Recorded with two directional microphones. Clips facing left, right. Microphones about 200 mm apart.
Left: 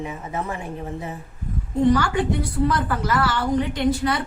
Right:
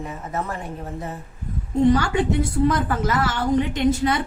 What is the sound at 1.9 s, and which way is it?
A woman's voice, 25° right (ahead or behind).